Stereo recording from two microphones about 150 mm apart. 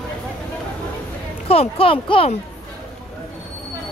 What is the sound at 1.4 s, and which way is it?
Speech, 40° left (ahead or behind).